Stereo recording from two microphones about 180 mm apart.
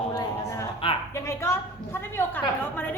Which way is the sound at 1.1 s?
15° left (ahead or behind).